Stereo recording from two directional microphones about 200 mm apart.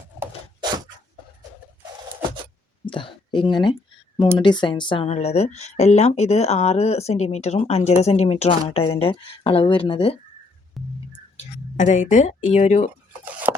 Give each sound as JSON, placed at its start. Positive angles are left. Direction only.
{"t": 2.8, "sound": "speech", "side_deg": 25}
{"t": 10.8, "sound": "music", "side_deg": 0}
{"t": 11.3, "sound": "speech", "side_deg": 35}
{"t": 13.5, "sound": "a sound", "side_deg": -15}